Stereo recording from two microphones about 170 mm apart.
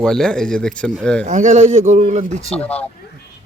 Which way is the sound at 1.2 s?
45° right (ahead or behind).